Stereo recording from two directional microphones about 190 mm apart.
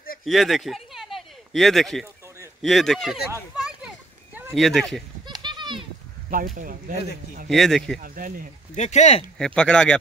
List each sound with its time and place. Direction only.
0.2 s a sound: centre (ahead or behind)
2.6 s speech: centre (ahead or behind)
3.5 s children playing: 5° right (ahead or behind)
4.6 s speech: centre (ahead or behind)
5.2 s children playing: 25° right (ahead or behind)
6.3 s speech: 45° right (ahead or behind)
7.4 s speech: centre (ahead or behind)
8.0 s speech: 45° right (ahead or behind)
8.7 s speech: 35° left (ahead or behind)
9.4 s speech: 5° left (ahead or behind)